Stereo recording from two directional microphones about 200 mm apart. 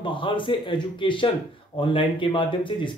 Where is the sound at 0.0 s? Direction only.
25° left (ahead or behind).